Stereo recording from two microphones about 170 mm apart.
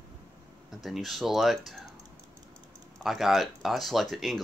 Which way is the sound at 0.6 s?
Centre (ahead or behind).